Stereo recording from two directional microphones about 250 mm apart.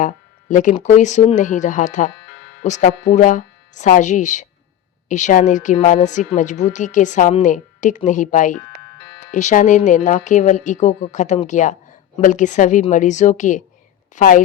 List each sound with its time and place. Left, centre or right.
0.0 s a woman's voice: left